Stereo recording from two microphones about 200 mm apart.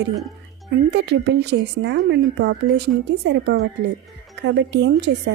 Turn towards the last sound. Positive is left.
turn(degrees=-55)  # may be behind; listen again after turning